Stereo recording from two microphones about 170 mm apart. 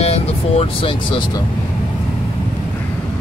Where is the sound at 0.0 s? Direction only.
35° left (ahead or behind).